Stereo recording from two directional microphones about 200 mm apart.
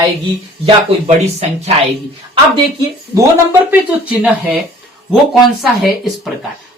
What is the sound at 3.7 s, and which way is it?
A woman's voice, 5° right (ahead or behind).